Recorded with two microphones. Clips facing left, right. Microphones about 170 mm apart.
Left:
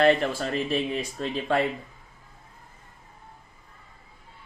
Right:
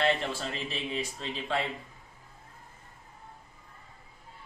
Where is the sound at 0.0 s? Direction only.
55° left (ahead or behind).